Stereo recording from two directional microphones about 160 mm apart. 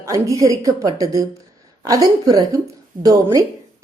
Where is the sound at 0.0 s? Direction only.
20° right (ahead or behind).